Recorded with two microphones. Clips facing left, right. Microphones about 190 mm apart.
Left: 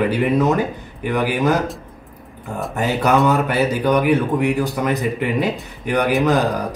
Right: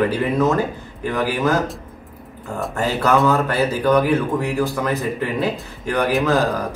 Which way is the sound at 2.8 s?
15° left (ahead or behind).